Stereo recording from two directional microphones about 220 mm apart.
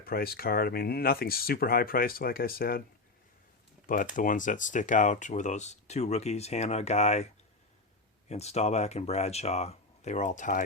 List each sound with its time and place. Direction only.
0.0 s speech: 45° left (ahead or behind)
3.8 s speech: 35° left (ahead or behind)
8.3 s speech: 30° left (ahead or behind)